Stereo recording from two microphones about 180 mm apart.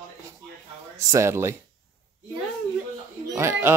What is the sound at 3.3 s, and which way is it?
Speech, 15° right (ahead or behind).